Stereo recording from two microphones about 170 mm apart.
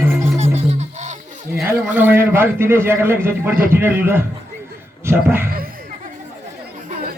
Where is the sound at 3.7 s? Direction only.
10° right (ahead or behind).